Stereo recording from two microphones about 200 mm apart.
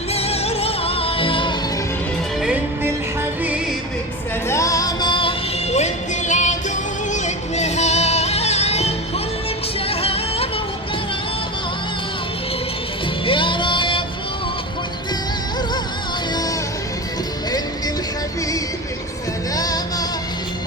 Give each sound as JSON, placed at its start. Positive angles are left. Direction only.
{"t": 0.1, "sound": "music", "side_deg": 30}
{"t": 2.4, "sound": "music", "side_deg": -5}
{"t": 4.4, "sound": "music", "side_deg": 15}
{"t": 5.7, "sound": "music", "side_deg": 35}
{"t": 9.9, "sound": "music", "side_deg": 30}
{"t": 13.2, "sound": "music", "side_deg": 25}
{"t": 19.5, "sound": "music", "side_deg": 20}